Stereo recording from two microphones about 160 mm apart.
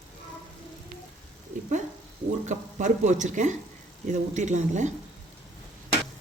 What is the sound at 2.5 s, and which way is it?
Speech, 50° right (ahead or behind).